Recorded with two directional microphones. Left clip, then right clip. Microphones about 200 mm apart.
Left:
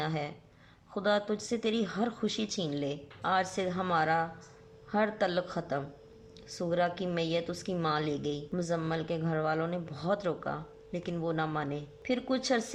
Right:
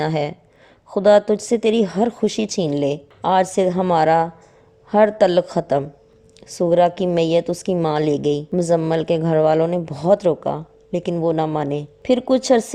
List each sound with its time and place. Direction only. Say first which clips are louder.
0.0 s a woman's voice: right 14 dB; 35° right (ahead or behind)